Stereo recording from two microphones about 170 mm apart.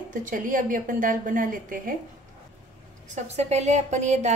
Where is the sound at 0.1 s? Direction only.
50° right (ahead or behind).